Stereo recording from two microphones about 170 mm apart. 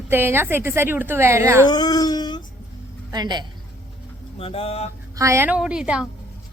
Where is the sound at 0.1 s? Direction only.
15° right (ahead or behind).